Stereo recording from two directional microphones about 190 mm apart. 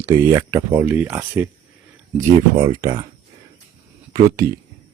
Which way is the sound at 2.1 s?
20° right (ahead or behind).